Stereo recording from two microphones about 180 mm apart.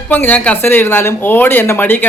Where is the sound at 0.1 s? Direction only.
10° left (ahead or behind).